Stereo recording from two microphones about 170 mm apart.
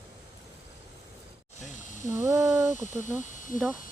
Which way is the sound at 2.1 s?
15° right (ahead or behind).